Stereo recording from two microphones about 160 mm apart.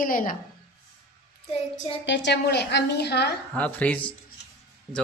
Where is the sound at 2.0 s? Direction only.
90° left.